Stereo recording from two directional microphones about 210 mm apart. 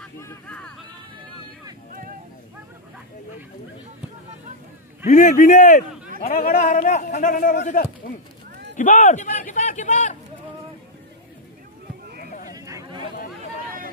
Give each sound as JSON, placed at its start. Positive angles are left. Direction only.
{"t": 0.0, "sound": "vehicle", "side_deg": 5}
{"t": 5.0, "sound": "a man's voice", "side_deg": 40}
{"t": 12.5, "sound": "a sound", "side_deg": -15}